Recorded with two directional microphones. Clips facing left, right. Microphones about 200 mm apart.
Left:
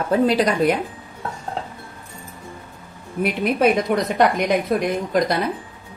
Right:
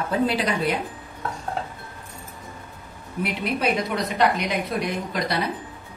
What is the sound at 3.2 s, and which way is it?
A woman's voice, 50° left (ahead or behind).